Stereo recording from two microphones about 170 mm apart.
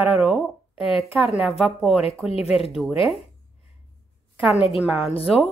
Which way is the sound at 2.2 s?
35° left (ahead or behind).